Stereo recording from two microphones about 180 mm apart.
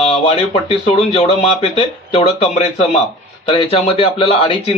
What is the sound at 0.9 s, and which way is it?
A man's voice, 35° left (ahead or behind).